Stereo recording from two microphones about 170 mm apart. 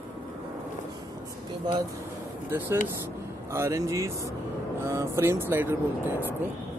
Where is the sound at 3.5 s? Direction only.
15° right (ahead or behind).